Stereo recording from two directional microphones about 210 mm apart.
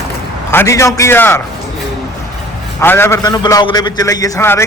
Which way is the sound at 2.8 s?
10° left (ahead or behind).